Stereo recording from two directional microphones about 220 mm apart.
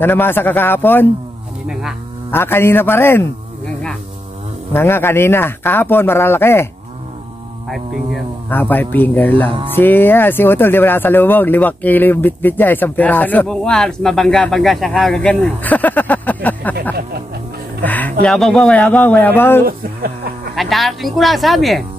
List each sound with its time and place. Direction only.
0.0 s speech: 10° left (ahead or behind)
1.7 s speech: centre (ahead or behind)
2.3 s speech: 10° left (ahead or behind)
7.7 s speech: 5° left (ahead or behind)
17.8 s speech: 5° left (ahead or behind)
19.6 s speech: 40° right (ahead or behind)
20.5 s speech: centre (ahead or behind)